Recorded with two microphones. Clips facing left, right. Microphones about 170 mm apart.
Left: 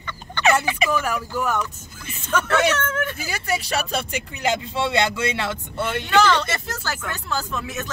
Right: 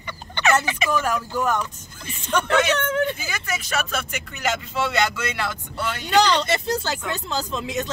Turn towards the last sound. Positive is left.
turn(degrees=-20)  # may be behind; listen again after turning